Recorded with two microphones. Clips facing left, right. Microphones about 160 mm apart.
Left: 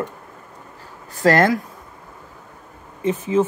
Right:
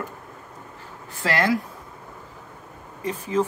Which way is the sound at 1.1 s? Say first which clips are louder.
Left 7 dB; 45° left (ahead or behind).